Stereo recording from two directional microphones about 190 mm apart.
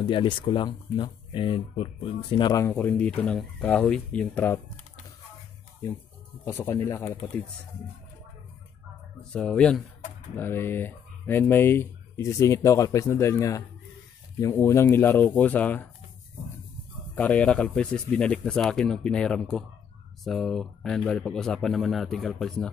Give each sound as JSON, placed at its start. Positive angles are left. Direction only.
{"t": 0.0, "sound": "speech", "side_deg": 25}
{"t": 2.6, "sound": "speech", "side_deg": 10}
{"t": 6.4, "sound": "speech", "side_deg": 15}
{"t": 9.3, "sound": "speech", "side_deg": 5}
{"t": 17.1, "sound": "speech", "side_deg": 5}